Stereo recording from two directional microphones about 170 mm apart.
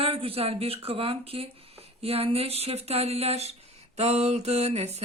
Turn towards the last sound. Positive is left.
turn(degrees=-40)  # may be behind; listen again after turning